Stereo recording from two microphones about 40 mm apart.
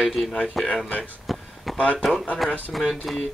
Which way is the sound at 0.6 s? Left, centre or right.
Centre.